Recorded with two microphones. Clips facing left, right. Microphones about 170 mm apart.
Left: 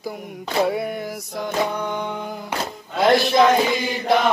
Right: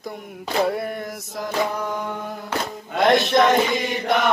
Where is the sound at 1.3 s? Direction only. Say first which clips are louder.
Left 1 dB; centre (ahead or behind).